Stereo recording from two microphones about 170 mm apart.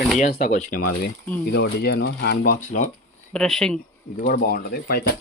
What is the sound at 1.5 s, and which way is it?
Speech, 75° left (ahead or behind).